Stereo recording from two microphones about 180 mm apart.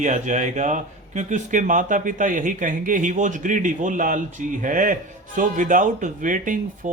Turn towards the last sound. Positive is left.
turn(degrees=-45)  # may be behind; listen again after turning